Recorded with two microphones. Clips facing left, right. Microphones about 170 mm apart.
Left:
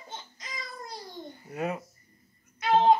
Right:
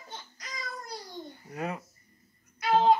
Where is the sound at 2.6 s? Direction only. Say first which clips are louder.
Left 1 dB; 20° left (ahead or behind).